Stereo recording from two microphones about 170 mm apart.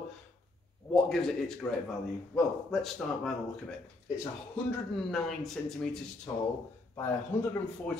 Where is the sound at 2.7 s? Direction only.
Centre (ahead or behind).